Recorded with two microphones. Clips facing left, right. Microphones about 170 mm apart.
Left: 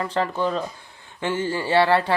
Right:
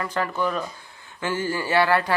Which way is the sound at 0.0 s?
25° left (ahead or behind).